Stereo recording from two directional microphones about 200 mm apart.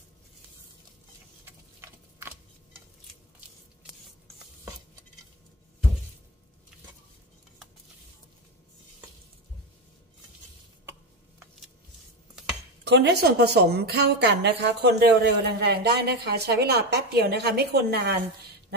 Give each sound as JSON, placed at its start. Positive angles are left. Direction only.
{"t": 1.8, "sound": "tick-tock", "side_deg": -15}
{"t": 12.8, "sound": "a woman's voice", "side_deg": -60}